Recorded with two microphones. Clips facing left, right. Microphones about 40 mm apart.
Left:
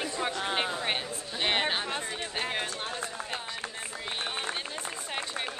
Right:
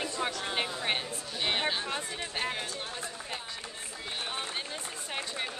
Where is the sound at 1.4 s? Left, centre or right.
Left.